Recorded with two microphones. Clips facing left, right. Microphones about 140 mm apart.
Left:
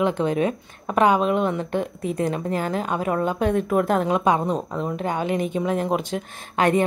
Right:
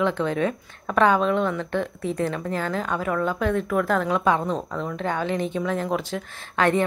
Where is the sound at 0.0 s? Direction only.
15° left (ahead or behind).